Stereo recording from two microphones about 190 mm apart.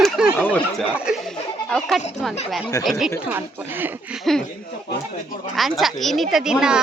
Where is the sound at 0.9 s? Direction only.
5° right (ahead or behind).